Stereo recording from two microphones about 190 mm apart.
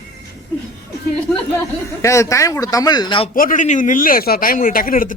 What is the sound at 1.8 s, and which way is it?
Speech, 15° left (ahead or behind).